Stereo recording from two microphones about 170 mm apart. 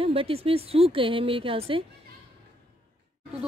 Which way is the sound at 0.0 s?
35° right (ahead or behind).